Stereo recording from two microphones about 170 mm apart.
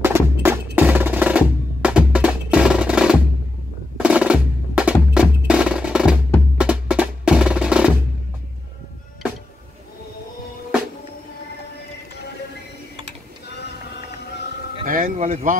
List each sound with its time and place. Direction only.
0.0 s music: 15° right (ahead or behind)
0.7 s percussion: 10° right (ahead or behind)
6.6 s music: 5° right (ahead or behind)
14.9 s a sound: 55° right (ahead or behind)